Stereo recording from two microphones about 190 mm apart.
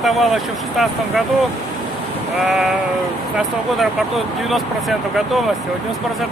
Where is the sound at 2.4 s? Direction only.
Centre (ahead or behind).